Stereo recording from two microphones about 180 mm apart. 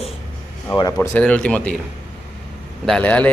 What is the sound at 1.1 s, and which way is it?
Speech, 5° left (ahead or behind).